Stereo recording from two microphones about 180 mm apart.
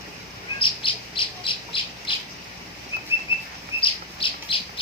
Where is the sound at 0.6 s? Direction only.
30° left (ahead or behind).